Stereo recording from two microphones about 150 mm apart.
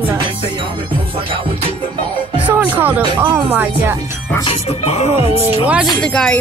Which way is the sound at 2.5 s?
10° right (ahead or behind).